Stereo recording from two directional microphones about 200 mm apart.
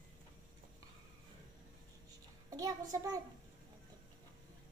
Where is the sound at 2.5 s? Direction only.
15° right (ahead or behind).